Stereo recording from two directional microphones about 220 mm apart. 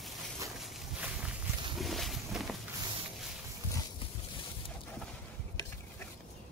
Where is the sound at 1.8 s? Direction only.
Centre (ahead or behind).